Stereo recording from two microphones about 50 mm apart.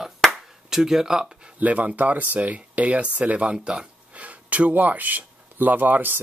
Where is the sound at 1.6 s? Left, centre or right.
Right.